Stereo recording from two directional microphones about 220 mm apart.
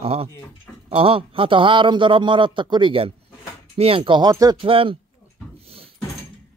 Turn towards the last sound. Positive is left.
turn(degrees=-25)  # may be behind; listen again after turning